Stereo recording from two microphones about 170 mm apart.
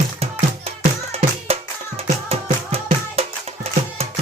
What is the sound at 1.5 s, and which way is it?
Music, 35° right (ahead or behind).